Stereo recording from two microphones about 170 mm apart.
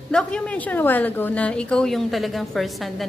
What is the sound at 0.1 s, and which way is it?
A woman's voice, 5° left (ahead or behind).